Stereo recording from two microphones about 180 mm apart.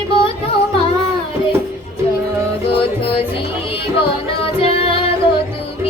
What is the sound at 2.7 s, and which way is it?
Music, 30° left (ahead or behind).